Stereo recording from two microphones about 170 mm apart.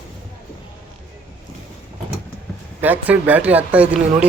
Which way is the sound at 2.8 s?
10° right (ahead or behind).